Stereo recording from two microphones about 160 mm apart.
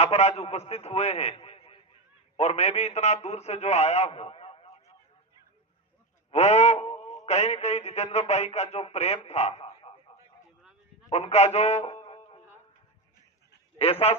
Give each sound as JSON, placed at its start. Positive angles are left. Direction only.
{"t": 0.0, "sound": "a man's voice", "side_deg": 40}
{"t": 6.3, "sound": "speech", "side_deg": 40}
{"t": 11.1, "sound": "a man's voice", "side_deg": 40}
{"t": 13.7, "sound": "a man's voice", "side_deg": 40}